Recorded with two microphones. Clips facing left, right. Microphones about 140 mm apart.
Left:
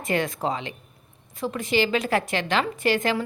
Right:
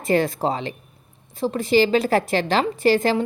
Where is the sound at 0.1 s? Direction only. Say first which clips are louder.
Right 5 dB; 35° right (ahead or behind).